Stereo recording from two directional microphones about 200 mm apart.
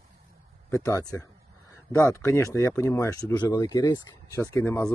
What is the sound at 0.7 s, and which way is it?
Speech, 15° left (ahead or behind).